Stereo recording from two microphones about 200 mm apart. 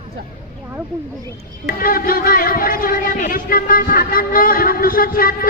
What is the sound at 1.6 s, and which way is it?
A man's voice, 45° left (ahead or behind).